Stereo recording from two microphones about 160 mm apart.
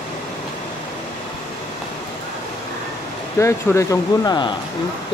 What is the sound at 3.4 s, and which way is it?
Speech, 20° left (ahead or behind).